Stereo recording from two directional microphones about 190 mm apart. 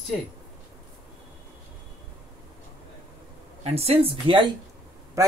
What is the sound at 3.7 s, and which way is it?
Speech, 30° right (ahead or behind).